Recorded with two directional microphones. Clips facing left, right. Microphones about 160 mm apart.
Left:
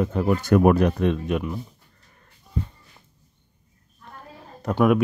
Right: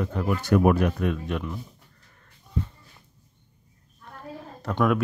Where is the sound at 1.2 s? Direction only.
20° left (ahead or behind).